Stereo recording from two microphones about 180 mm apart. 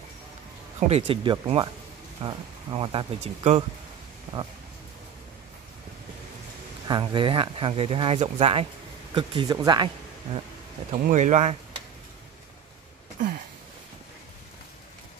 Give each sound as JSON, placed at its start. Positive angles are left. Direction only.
{"t": 0.7, "sound": "speech", "side_deg": -35}
{"t": 6.9, "sound": "speech", "side_deg": -25}
{"t": 10.9, "sound": "speech", "side_deg": -40}